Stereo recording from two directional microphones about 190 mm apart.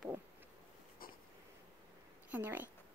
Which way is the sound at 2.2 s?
10° right (ahead or behind).